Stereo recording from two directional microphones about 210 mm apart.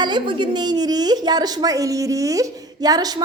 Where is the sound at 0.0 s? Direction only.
20° right (ahead or behind).